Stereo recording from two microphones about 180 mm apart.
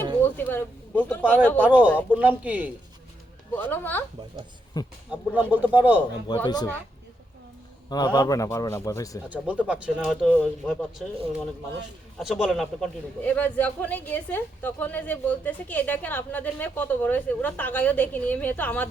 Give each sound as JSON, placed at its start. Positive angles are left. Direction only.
{"t": 0.2, "sound": "speech", "side_deg": 10}
{"t": 1.6, "sound": "speech", "side_deg": -10}
{"t": 3.5, "sound": "a man's voice", "side_deg": 10}
{"t": 4.7, "sound": "a man's voice", "side_deg": 20}
{"t": 5.1, "sound": "speech", "side_deg": -10}
{"t": 6.2, "sound": "a man's voice", "side_deg": 25}
{"t": 7.9, "sound": "a man's voice", "side_deg": 25}
{"t": 9.3, "sound": "speech", "side_deg": -5}
{"t": 12.2, "sound": "a man's voice", "side_deg": 0}